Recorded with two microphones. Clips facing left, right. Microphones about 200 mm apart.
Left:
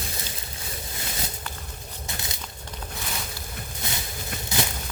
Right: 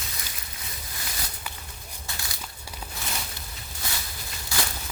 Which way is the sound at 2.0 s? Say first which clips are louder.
Left 3 dB; 20° left (ahead or behind).